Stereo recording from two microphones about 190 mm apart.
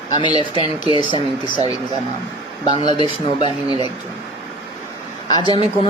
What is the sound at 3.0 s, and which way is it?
Speech, 25° left (ahead or behind).